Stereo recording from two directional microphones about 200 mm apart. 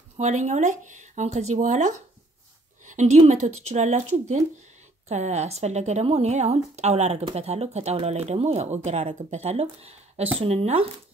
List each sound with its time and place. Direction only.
0.2 s speech: 35° right (ahead or behind)